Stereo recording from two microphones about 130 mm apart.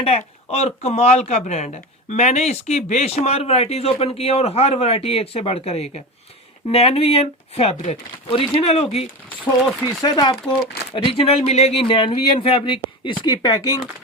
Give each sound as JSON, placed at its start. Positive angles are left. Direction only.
{"t": 0.0, "sound": "speech", "side_deg": 55}
{"t": 8.3, "sound": "speech", "side_deg": 45}
{"t": 9.8, "sound": "speech", "side_deg": 30}
{"t": 10.9, "sound": "speech", "side_deg": 45}